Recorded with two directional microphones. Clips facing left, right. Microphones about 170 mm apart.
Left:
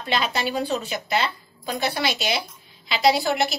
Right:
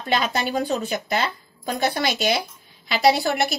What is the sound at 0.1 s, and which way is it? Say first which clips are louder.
A woman's voice: right 2 dB; 45° right (ahead or behind).